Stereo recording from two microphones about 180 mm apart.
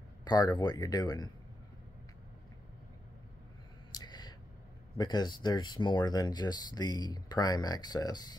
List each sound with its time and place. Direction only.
0.2 s speech: 20° left (ahead or behind)
3.9 s a sound: 25° left (ahead or behind)
4.9 s speech: 25° left (ahead or behind)